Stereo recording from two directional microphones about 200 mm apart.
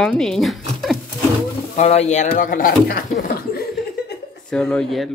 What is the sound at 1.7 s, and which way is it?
Speech, 35° left (ahead or behind).